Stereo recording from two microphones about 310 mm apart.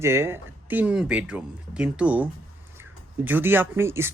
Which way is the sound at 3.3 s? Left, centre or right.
Centre.